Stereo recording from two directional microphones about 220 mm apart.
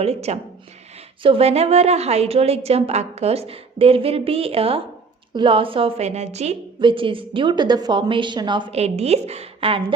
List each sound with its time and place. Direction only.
0.0 s a woman's voice: 30° right (ahead or behind)